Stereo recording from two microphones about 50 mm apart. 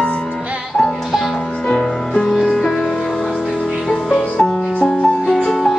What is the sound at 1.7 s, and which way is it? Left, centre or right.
Music, centre.